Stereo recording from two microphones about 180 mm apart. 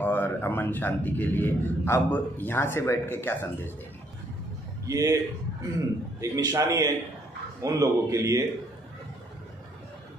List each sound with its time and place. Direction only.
0.0 s a man's voice: 10° left (ahead or behind)
4.8 s a man's voice: 20° right (ahead or behind)
6.2 s a man's voice: 20° right (ahead or behind)